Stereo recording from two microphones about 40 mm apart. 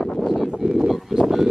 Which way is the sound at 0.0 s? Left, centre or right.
Centre.